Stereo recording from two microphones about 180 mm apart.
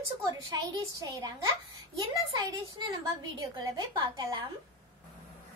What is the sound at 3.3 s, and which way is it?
Speech, 25° right (ahead or behind).